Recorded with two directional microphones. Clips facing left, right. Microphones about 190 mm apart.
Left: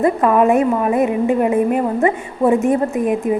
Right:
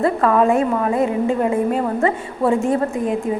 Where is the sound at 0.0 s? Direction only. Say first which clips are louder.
Left 2 dB; 15° left (ahead or behind).